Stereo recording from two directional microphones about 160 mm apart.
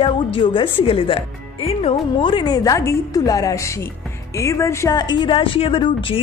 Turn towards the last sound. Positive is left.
turn(degrees=35)  # may be behind; listen again after turning